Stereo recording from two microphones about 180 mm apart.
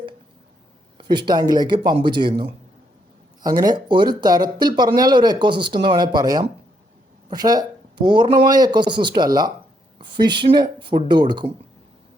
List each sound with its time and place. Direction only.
0.9 s speech: 25° right (ahead or behind)